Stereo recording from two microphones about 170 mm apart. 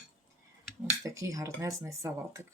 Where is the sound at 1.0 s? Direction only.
20° right (ahead or behind).